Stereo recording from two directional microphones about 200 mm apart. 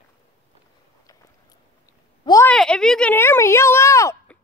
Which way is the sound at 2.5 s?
5° left (ahead or behind).